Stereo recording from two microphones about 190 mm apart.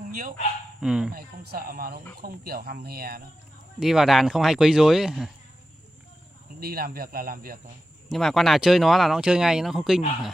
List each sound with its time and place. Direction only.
0.1 s speech: 50° right (ahead or behind)
0.7 s speech: 5° right (ahead or behind)
1.1 s speech: 50° right (ahead or behind)
3.8 s speech: centre (ahead or behind)
6.6 s speech: 50° right (ahead or behind)
8.1 s speech: centre (ahead or behind)